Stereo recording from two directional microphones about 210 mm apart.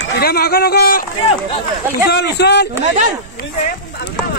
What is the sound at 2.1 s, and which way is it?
Speech, 55° left (ahead or behind).